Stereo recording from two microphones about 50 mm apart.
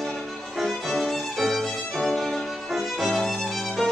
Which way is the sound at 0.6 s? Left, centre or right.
Centre.